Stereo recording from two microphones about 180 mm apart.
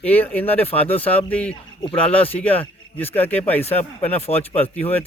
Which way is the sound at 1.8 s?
30° left (ahead or behind).